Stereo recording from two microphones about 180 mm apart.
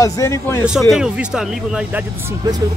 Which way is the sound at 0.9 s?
5° right (ahead or behind).